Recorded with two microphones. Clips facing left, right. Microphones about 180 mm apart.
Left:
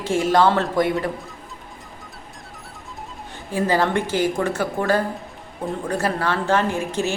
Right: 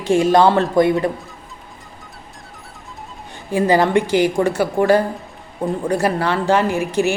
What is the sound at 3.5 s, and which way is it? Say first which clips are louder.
A woman's voice: right 5 dB; 15° right (ahead or behind).